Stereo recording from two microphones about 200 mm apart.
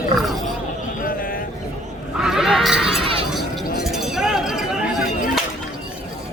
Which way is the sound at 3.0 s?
25° right (ahead or behind).